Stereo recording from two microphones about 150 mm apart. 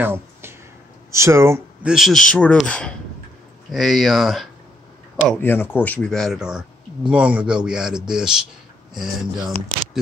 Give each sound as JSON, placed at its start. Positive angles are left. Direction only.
{"t": 0.0, "sound": "a sound", "side_deg": -15}
{"t": 1.1, "sound": "speech", "side_deg": -20}
{"t": 1.9, "sound": "speech", "side_deg": 0}
{"t": 5.4, "sound": "speech", "side_deg": 15}